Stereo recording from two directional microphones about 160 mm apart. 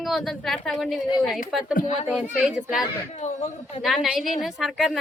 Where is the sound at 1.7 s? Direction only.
45° left (ahead or behind).